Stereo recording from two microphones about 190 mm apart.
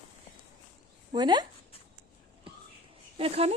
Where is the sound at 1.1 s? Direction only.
25° right (ahead or behind).